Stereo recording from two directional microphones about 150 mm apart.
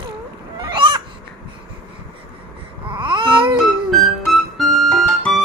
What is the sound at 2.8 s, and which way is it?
Babbling, 35° right (ahead or behind).